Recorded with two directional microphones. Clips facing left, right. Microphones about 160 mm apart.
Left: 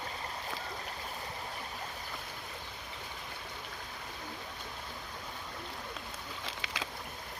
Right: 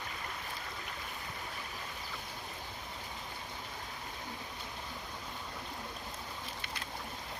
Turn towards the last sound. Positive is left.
turn(degrees=90)